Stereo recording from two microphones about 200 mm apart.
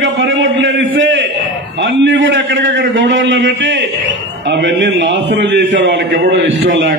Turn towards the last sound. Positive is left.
turn(degrees=-65)  # may be behind; listen again after turning